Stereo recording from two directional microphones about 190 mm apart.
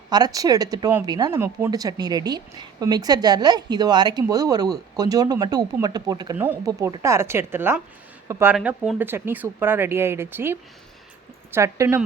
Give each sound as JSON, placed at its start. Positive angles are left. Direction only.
{"t": 0.1, "sound": "speech", "side_deg": -20}
{"t": 6.3, "sound": "speech", "side_deg": -10}